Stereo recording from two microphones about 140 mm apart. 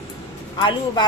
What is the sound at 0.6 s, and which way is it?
Speech, 30° left (ahead or behind).